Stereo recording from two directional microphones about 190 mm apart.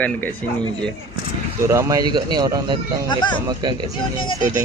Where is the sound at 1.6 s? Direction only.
15° right (ahead or behind).